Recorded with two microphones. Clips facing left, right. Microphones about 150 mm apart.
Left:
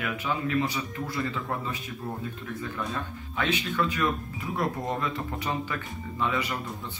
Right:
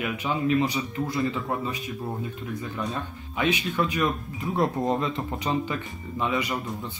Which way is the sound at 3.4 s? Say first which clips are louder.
Right 3 dB; 15° right (ahead or behind).